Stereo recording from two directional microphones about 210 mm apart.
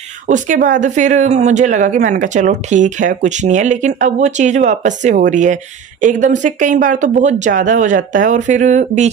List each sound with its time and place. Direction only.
0.3 s speech: 40° right (ahead or behind)